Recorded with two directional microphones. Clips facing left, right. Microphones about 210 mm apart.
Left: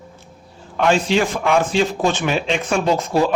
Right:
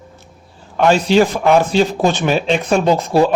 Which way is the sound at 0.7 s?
40° right (ahead or behind).